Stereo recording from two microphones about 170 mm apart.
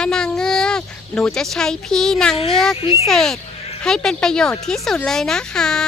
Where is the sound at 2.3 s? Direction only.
35° left (ahead or behind).